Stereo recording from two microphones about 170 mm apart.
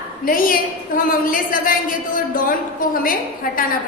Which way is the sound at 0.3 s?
55° left (ahead or behind).